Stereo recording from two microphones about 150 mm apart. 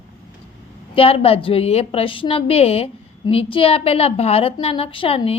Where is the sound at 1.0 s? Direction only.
40° left (ahead or behind).